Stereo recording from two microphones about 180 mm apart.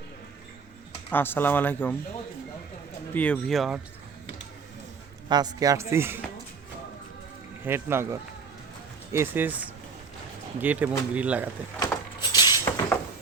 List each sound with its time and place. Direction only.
1.1 s speech: 10° left (ahead or behind)
3.1 s speech: 10° left (ahead or behind)
5.3 s speech: 20° right (ahead or behind)
7.6 s speech: 15° right (ahead or behind)
11.8 s a sound: 20° left (ahead or behind)